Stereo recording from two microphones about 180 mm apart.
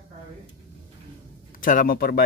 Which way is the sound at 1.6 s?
50° left (ahead or behind).